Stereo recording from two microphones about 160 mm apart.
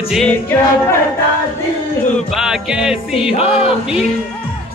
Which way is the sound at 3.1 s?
35° left (ahead or behind).